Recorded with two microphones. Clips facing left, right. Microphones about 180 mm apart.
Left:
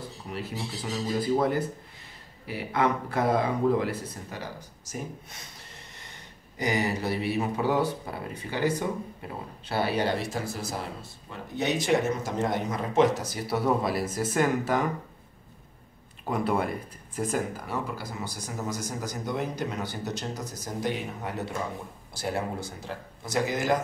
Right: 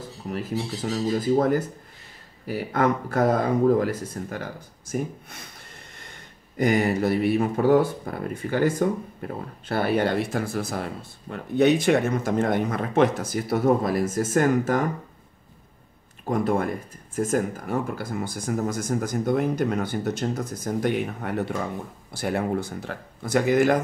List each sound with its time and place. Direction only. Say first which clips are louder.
0.3 s speech: right 7 dB; 45° right (ahead or behind)
16.3 s speech: right 4 dB; 45° right (ahead or behind)